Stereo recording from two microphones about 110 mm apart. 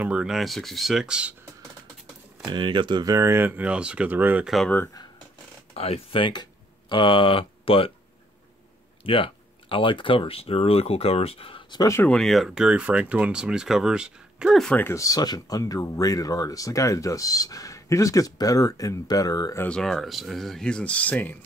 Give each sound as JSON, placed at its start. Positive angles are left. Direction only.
{"t": 0.0, "sound": "speech", "side_deg": -10}
{"t": 2.4, "sound": "speech", "side_deg": -45}
{"t": 3.1, "sound": "speech", "side_deg": -25}
{"t": 5.8, "sound": "speech", "side_deg": 65}
{"t": 6.9, "sound": "speech", "side_deg": 50}
{"t": 9.0, "sound": "speech", "side_deg": 55}
{"t": 12.0, "sound": "speech", "side_deg": 5}
{"t": 14.7, "sound": "speech", "side_deg": 15}
{"t": 15.0, "sound": "speech", "side_deg": 35}
{"t": 19.6, "sound": "speech", "side_deg": 5}